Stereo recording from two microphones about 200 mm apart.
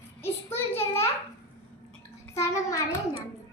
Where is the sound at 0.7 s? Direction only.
10° left (ahead or behind).